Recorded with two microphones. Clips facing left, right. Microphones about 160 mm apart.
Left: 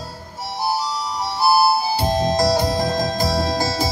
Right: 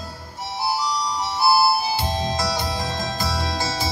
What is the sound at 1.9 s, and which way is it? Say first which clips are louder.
Music: left 5 dB; 40° left (ahead or behind).